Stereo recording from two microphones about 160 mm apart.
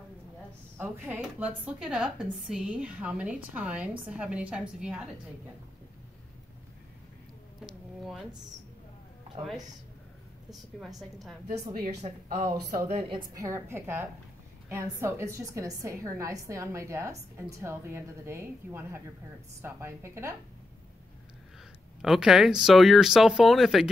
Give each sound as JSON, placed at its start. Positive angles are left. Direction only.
{"t": 0.7, "sound": "a woman's voice", "side_deg": -10}
{"t": 10.5, "sound": "speech", "side_deg": 0}
{"t": 12.0, "sound": "speech", "side_deg": -45}
{"t": 13.1, "sound": "a woman's voice", "side_deg": -20}
{"t": 22.0, "sound": "speech", "side_deg": -5}